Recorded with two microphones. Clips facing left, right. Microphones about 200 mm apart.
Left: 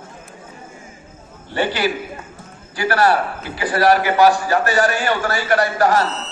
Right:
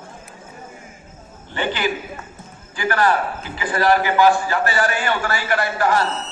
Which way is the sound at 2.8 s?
40° left (ahead or behind).